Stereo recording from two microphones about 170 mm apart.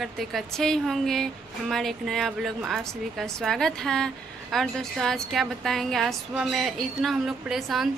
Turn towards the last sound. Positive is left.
turn(degrees=0)  # may be behind; listen again after turning